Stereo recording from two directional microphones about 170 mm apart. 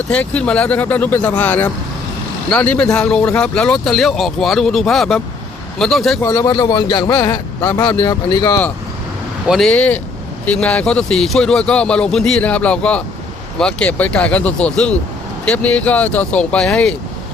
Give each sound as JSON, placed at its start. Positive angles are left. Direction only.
{"t": 0.1, "sound": "speech", "side_deg": 5}
{"t": 6.2, "sound": "a man's voice", "side_deg": 20}
{"t": 9.5, "sound": "speech", "side_deg": 0}